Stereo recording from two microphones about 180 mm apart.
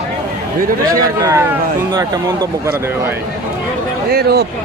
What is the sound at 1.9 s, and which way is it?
Speech, 20° right (ahead or behind).